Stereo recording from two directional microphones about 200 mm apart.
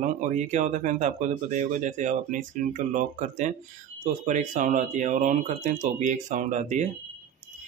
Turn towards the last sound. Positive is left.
turn(degrees=-35)  # may be behind; listen again after turning